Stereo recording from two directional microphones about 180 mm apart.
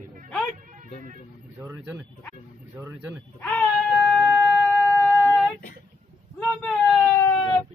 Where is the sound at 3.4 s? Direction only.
15° left (ahead or behind).